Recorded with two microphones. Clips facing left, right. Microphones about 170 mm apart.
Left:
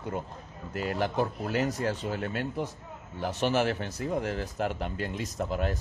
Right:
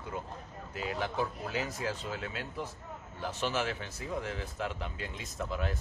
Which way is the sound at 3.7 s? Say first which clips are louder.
Left 7 dB; 40° left (ahead or behind).